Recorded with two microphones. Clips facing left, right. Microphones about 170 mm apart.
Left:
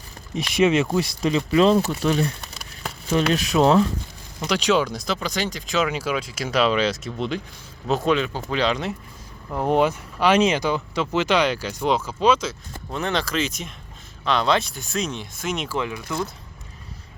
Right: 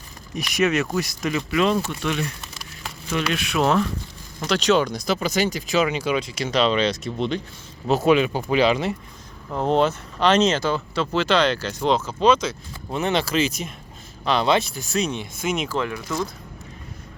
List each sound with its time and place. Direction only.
0.3 s speech: 25° left (ahead or behind)
4.4 s speech: 10° left (ahead or behind)
7.9 s speech: 5° right (ahead or behind)
9.5 s speech: 10° left (ahead or behind)
13.1 s speech: 5° right (ahead or behind)
15.8 s speech: 15° left (ahead or behind)